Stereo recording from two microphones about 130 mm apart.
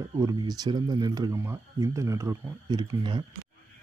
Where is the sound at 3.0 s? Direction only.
35° right (ahead or behind).